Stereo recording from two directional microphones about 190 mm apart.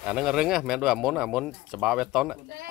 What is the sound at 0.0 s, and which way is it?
Speech, centre (ahead or behind).